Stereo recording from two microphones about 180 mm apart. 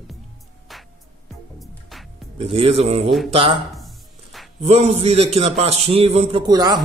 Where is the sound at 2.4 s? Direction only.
30° right (ahead or behind).